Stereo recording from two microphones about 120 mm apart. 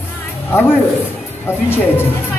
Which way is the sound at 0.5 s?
20° left (ahead or behind).